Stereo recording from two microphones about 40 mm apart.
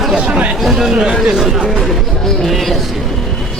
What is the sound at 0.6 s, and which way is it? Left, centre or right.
Speech, centre.